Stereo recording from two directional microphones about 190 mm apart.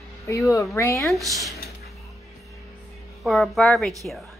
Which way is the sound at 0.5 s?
15° left (ahead or behind).